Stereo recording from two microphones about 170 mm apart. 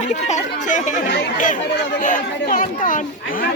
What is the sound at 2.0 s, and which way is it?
Speech, 55° left (ahead or behind).